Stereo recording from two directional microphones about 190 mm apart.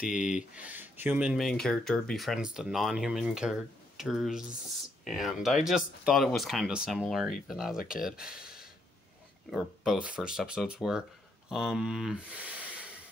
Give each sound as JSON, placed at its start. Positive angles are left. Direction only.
{"t": 0.1, "sound": "speech", "side_deg": -5}
{"t": 7.7, "sound": "speech", "side_deg": 50}
{"t": 8.0, "sound": "speech", "side_deg": -5}
{"t": 9.5, "sound": "speech", "side_deg": 0}